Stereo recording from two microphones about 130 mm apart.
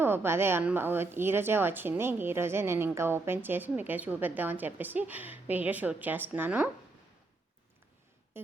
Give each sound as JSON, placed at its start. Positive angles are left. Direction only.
{"t": 0.0, "sound": "a woman's voice", "side_deg": -15}